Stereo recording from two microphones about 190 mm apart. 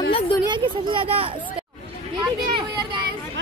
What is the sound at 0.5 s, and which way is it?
Speech, 25° right (ahead or behind).